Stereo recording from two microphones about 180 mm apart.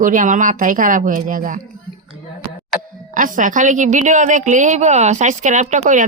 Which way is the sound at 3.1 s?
45° right (ahead or behind).